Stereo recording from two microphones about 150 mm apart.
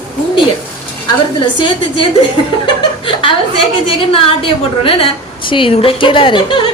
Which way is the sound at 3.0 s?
35° left (ahead or behind).